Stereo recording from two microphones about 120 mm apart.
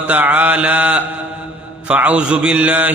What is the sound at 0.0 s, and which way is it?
Mantra, 15° right (ahead or behind).